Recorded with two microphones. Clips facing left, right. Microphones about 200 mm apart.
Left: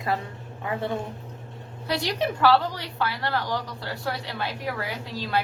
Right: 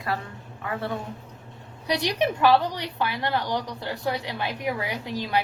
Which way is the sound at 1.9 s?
20° right (ahead or behind).